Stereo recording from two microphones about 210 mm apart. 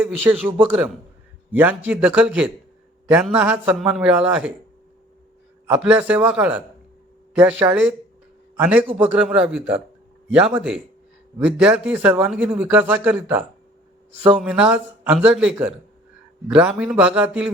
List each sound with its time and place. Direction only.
0.0 s a man's voice: 10° right (ahead or behind)
5.6 s a man's voice: 10° right (ahead or behind)
7.6 s a man's voice: 5° right (ahead or behind)